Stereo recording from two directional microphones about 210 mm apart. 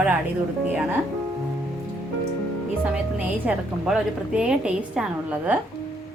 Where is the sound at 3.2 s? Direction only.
5° right (ahead or behind).